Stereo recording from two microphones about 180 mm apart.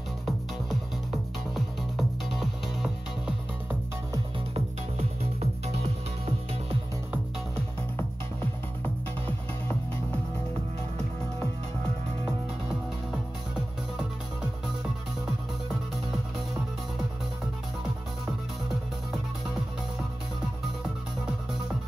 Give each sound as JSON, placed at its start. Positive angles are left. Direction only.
{"t": 1.5, "sound": "music", "side_deg": 0}
{"t": 4.6, "sound": "music", "side_deg": -35}